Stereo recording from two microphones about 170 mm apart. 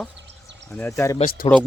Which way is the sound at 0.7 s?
15° left (ahead or behind).